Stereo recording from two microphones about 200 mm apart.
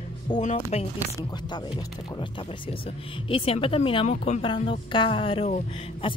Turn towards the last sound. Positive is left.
turn(degrees=30)  # may be behind; listen again after turning